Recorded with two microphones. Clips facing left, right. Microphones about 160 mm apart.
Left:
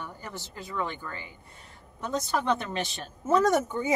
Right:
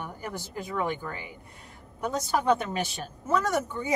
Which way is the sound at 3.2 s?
25° left (ahead or behind).